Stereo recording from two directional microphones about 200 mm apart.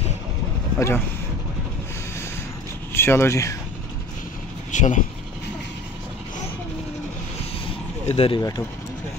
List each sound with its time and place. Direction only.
0.7 s speech: 15° left (ahead or behind)
2.9 s speech: 10° left (ahead or behind)
4.6 s speech: 40° left (ahead or behind)
8.1 s speech: 30° left (ahead or behind)
8.4 s speech: 15° left (ahead or behind)